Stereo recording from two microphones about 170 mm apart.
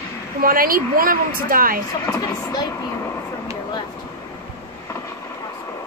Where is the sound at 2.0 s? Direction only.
20° left (ahead or behind).